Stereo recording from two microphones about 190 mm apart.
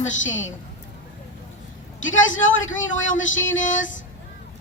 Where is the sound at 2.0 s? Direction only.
90° left.